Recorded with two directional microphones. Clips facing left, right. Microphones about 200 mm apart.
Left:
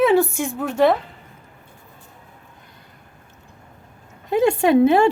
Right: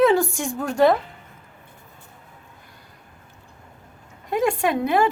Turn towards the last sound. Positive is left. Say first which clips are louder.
# left 6 dB
turn(degrees=25)  # may be behind; listen again after turning